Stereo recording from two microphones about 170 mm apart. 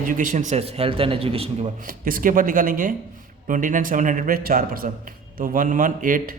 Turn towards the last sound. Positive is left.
turn(degrees=-50)  # may be behind; listen again after turning